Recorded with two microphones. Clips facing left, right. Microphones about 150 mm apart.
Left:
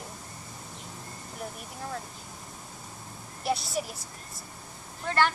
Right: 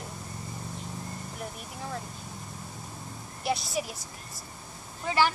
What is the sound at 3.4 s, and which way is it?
Speech, centre (ahead or behind).